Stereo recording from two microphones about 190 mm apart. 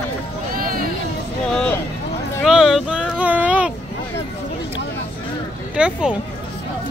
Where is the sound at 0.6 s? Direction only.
50° right (ahead or behind).